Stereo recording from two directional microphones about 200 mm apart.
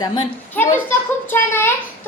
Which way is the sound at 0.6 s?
10° left (ahead or behind).